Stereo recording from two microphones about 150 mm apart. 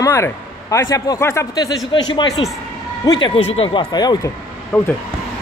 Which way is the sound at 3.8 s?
25° left (ahead or behind).